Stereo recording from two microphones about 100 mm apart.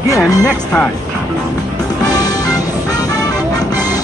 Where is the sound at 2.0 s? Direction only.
40° left (ahead or behind).